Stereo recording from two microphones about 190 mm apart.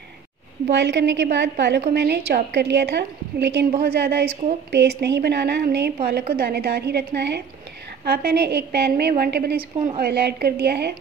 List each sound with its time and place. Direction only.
0.7 s a woman's voice: 70° right (ahead or behind)